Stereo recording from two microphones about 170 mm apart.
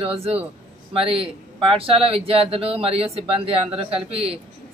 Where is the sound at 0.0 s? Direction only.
35° right (ahead or behind).